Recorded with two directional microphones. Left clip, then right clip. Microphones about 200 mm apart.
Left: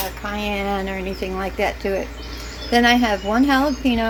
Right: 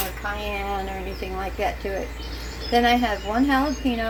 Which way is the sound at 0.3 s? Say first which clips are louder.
Left 7 dB; 50° left (ahead or behind).